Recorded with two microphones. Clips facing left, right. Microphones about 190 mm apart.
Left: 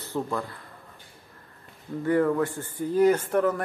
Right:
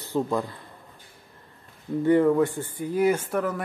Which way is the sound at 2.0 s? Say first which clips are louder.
Right 4 dB; 20° right (ahead or behind).